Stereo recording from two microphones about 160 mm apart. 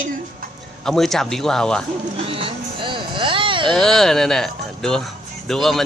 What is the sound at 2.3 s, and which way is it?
Vehicle, 35° right (ahead or behind).